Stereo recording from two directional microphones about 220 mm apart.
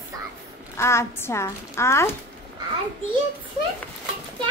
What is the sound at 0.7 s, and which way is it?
A woman's voice, 10° left (ahead or behind).